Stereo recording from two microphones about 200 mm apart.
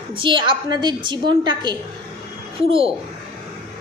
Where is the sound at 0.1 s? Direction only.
25° right (ahead or behind).